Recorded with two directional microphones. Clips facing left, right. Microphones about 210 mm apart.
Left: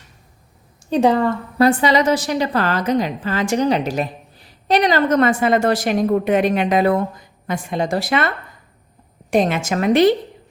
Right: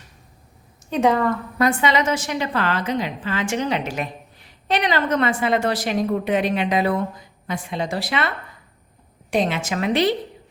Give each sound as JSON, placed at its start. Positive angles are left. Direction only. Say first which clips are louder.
{"t": 0.8, "sound": "a woman's voice", "louder": "left 3 dB", "side_deg": 35}
{"t": 9.3, "sound": "a woman's voice", "louder": "left 4 dB", "side_deg": 45}